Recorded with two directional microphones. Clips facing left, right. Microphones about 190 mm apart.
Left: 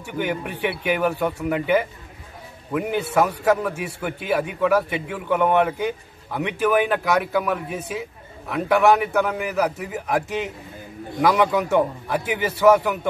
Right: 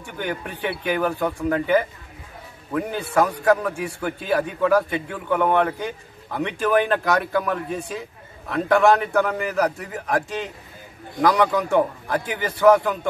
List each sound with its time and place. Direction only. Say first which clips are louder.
0.0 s a man's voice: left 3 dB; 10° left (ahead or behind)